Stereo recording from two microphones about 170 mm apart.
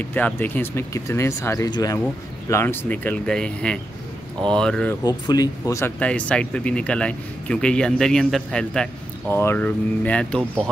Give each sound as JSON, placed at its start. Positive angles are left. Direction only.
{"t": 0.0, "sound": "speech", "side_deg": 10}
{"t": 5.2, "sound": "speech", "side_deg": 20}
{"t": 9.3, "sound": "speech", "side_deg": 15}